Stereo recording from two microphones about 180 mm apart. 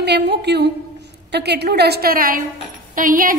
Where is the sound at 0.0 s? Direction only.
65° right (ahead or behind).